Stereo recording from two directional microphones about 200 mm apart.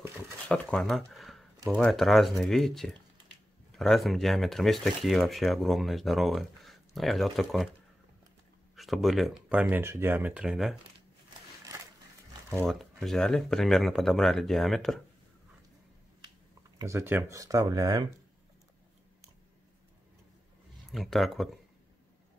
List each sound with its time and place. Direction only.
0.5 s speech: 5° left (ahead or behind)
8.7 s speech: centre (ahead or behind)
12.4 s speech: 5° left (ahead or behind)
16.7 s speech: 15° right (ahead or behind)
20.9 s speech: centre (ahead or behind)